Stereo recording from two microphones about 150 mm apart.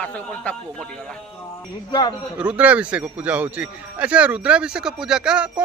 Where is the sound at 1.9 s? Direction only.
25° left (ahead or behind).